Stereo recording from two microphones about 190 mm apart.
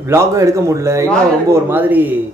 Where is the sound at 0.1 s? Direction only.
15° right (ahead or behind).